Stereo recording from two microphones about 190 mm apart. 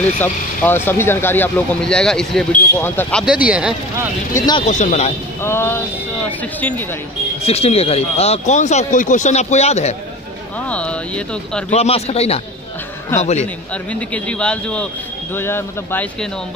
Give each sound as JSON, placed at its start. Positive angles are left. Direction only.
{"t": 0.2, "sound": "speech", "side_deg": 10}
{"t": 3.3, "sound": "speech", "side_deg": -5}
{"t": 4.3, "sound": "speech", "side_deg": 20}
{"t": 4.6, "sound": "speech", "side_deg": 40}
{"t": 5.4, "sound": "speech", "side_deg": 15}
{"t": 7.4, "sound": "speech", "side_deg": 30}
{"t": 10.7, "sound": "speech", "side_deg": 5}
{"t": 11.7, "sound": "speech", "side_deg": 35}
{"t": 13.9, "sound": "speech", "side_deg": 5}